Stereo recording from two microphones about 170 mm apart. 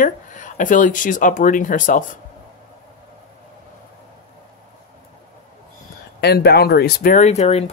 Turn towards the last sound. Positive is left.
turn(degrees=40)  # may be behind; listen again after turning